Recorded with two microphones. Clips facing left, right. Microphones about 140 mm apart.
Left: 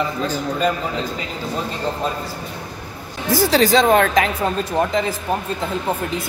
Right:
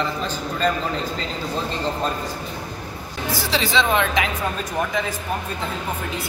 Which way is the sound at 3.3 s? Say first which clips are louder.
Left 8 dB; 45° left (ahead or behind).